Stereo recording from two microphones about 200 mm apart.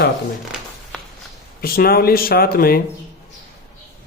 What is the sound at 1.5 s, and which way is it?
Speech, 50° left (ahead or behind).